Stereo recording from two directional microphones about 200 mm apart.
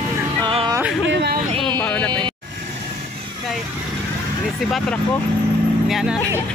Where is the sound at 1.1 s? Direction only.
60° right (ahead or behind).